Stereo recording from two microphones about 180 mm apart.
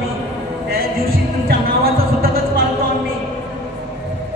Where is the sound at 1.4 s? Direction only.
55° right (ahead or behind).